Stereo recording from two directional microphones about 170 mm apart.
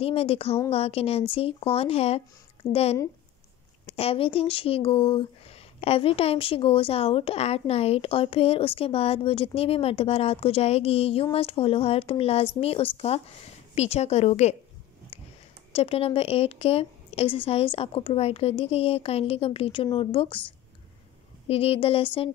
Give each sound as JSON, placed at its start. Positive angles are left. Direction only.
{"t": 0.0, "sound": "speech", "side_deg": 35}
{"t": 15.1, "sound": "a sound", "side_deg": 35}
{"t": 15.7, "sound": "speech", "side_deg": 35}
{"t": 21.5, "sound": "speech", "side_deg": 35}